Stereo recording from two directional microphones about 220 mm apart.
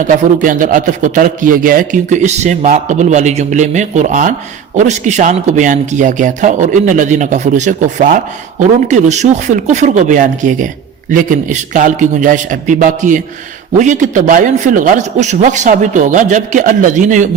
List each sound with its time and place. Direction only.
0.3 s a man's voice: 35° right (ahead or behind)